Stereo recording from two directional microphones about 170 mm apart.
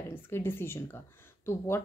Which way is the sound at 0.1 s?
15° left (ahead or behind).